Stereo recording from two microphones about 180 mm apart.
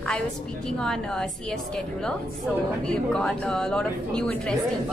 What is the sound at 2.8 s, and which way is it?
A woman's voice, 5° left (ahead or behind).